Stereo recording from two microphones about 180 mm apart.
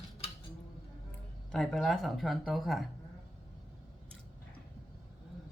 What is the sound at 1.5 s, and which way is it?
Speech, centre (ahead or behind).